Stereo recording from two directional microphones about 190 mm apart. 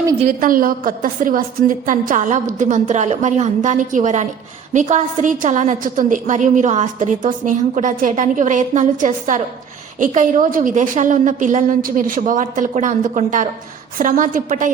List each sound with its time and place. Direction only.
0.3 s a woman's voice: 45° right (ahead or behind)